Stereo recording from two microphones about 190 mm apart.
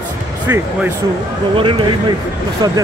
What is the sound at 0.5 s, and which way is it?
Speech, 15° right (ahead or behind).